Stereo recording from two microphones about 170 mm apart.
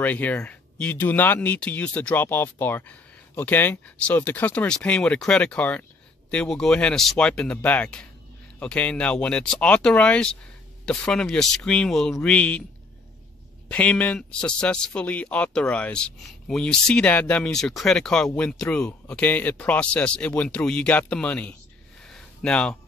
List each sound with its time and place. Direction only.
0.0 s speech: 10° left (ahead or behind)
13.7 s speech: 10° left (ahead or behind)
22.0 s a sound: 5° left (ahead or behind)